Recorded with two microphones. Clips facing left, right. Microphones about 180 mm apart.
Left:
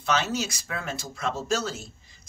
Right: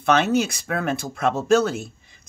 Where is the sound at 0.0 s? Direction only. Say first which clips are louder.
Right 8 dB; 60° right (ahead or behind).